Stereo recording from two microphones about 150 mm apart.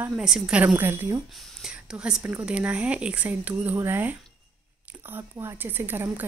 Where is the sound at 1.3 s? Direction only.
Centre (ahead or behind).